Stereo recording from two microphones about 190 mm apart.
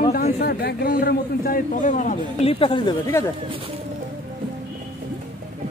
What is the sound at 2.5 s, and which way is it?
Speech, 30° left (ahead or behind).